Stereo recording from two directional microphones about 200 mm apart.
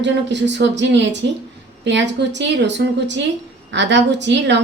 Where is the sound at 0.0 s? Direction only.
60° right (ahead or behind).